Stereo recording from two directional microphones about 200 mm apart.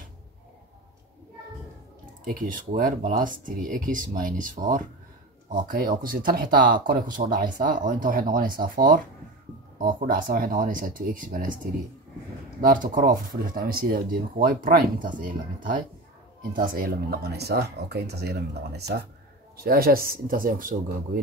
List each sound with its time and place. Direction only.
2.2 s speech: 40° right (ahead or behind)
12.6 s speech: 40° right (ahead or behind)